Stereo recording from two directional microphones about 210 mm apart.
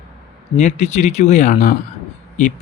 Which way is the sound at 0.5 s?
35° left (ahead or behind).